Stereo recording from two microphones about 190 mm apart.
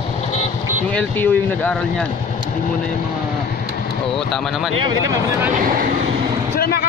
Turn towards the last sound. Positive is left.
turn(degrees=55)  # may be behind; listen again after turning